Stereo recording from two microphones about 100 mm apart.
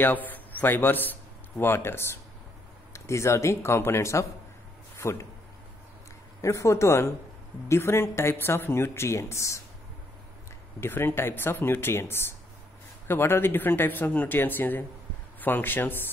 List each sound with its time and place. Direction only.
0.0 s a woman's voice: 15° left (ahead or behind)
4.9 s a sound: 25° left (ahead or behind)
6.4 s a woman's voice: 30° left (ahead or behind)
10.8 s a woman's voice: 20° left (ahead or behind)